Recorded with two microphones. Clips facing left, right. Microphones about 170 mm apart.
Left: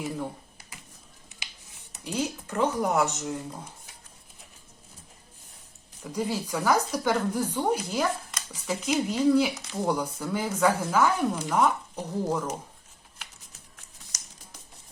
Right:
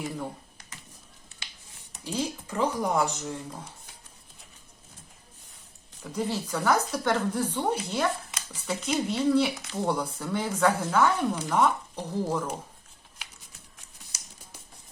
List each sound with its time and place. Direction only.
1.9 s speech: 5° left (ahead or behind)
6.0 s speech: 5° left (ahead or behind)